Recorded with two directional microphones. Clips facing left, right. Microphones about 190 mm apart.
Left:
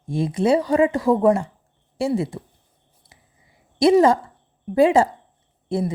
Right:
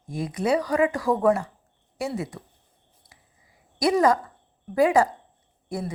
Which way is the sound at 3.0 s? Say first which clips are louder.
Left 4 dB; 25° left (ahead or behind).